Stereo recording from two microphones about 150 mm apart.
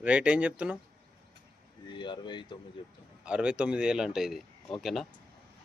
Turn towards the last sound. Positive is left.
turn(degrees=0)  # may be behind; listen again after turning